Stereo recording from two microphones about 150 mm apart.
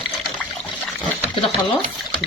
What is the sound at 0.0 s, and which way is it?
Trickle, 10° left (ahead or behind).